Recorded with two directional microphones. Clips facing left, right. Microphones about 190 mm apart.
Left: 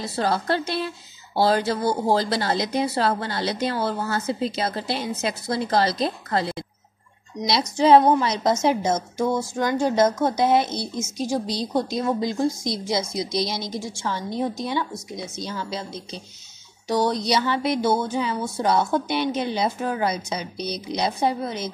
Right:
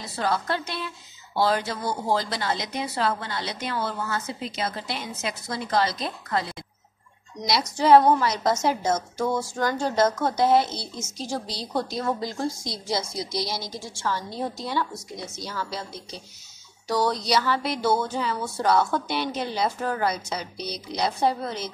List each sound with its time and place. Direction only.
0.0 s speech: 30° left (ahead or behind)
7.4 s a woman's voice: 20° left (ahead or behind)